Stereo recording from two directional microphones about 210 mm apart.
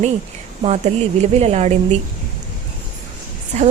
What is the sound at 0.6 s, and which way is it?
A woman's voice, 30° right (ahead or behind).